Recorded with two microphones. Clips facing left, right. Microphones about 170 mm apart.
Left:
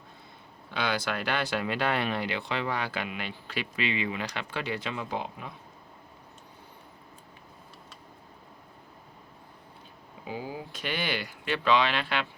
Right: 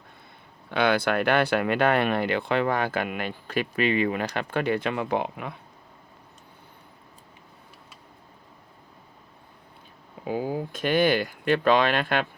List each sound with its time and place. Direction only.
0.7 s speech: 55° right (ahead or behind)
10.2 s speech: 50° right (ahead or behind)